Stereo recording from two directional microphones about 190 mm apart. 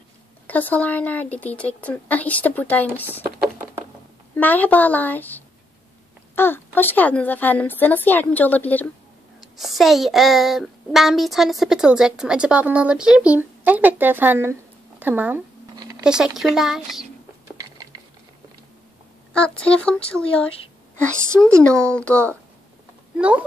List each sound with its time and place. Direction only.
0.5 s a woman's voice: 10° left (ahead or behind)
4.4 s a woman's voice: 10° left (ahead or behind)
17.6 s a sound: 20° right (ahead or behind)
19.3 s a child's voice: 5° left (ahead or behind)
21.5 s a child's voice: 5° left (ahead or behind)
23.1 s speech: 5° right (ahead or behind)